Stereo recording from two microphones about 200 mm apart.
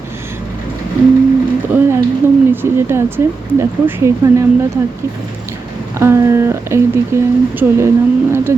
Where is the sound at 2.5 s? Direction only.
10° right (ahead or behind).